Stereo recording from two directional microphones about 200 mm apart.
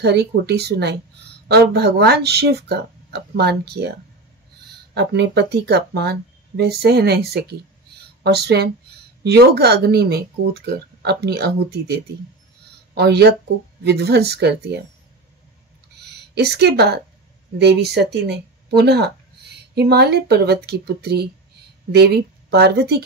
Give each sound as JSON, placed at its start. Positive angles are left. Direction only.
{"t": 0.0, "sound": "speech", "side_deg": -55}
{"t": 4.9, "sound": "speech", "side_deg": -55}
{"t": 16.0, "sound": "speech", "side_deg": -55}